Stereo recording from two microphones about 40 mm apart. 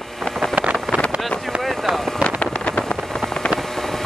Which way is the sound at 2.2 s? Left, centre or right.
Left.